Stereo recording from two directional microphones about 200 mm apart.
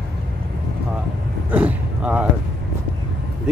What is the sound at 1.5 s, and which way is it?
Speech, 5° right (ahead or behind).